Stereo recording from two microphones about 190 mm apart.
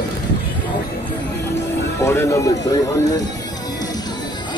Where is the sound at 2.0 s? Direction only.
15° left (ahead or behind).